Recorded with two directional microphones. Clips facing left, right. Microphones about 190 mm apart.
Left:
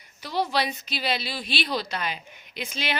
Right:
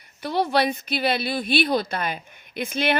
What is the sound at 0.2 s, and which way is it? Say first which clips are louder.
A woman's voice: right 5 dB; 55° right (ahead or behind).